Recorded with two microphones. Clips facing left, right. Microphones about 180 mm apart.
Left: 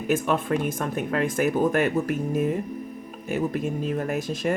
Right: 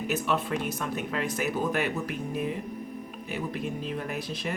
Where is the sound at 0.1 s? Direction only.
50° left (ahead or behind).